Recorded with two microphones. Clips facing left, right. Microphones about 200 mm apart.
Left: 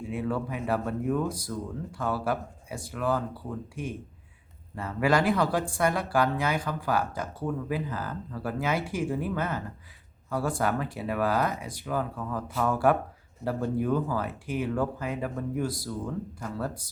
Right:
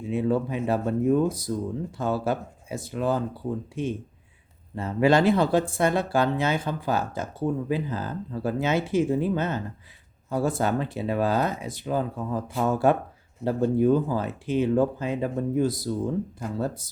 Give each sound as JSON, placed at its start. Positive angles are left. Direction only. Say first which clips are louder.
{"t": 0.0, "sound": "speech", "louder": "right 6 dB", "side_deg": -20}